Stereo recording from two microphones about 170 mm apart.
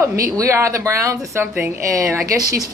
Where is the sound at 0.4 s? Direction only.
15° right (ahead or behind).